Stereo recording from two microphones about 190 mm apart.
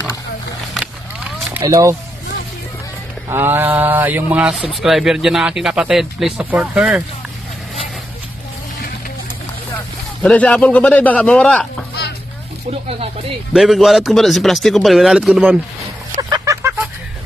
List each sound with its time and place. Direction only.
1.6 s speech: 15° right (ahead or behind)
3.3 s speech: 10° right (ahead or behind)
10.2 s a man's voice: 5° left (ahead or behind)
13.5 s speech: centre (ahead or behind)
16.2 s a sound: 20° right (ahead or behind)